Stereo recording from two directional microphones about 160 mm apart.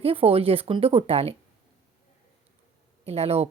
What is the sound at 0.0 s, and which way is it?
Speech, 35° right (ahead or behind).